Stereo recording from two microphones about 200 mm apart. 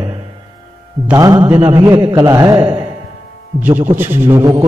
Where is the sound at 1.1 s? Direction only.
20° right (ahead or behind).